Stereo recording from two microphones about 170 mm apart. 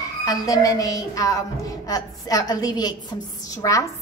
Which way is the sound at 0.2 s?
20° left (ahead or behind).